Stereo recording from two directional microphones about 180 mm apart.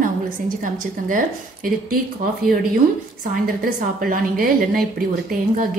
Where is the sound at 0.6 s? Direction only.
45° right (ahead or behind).